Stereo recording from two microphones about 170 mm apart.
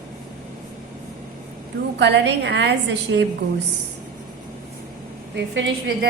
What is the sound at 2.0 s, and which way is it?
A woman's voice, 90° right.